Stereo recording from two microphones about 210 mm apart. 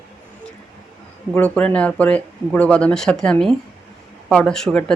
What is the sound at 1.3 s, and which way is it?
Speech, 5° left (ahead or behind).